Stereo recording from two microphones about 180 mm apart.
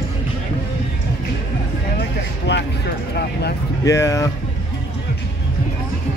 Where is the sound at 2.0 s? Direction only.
70° left (ahead or behind).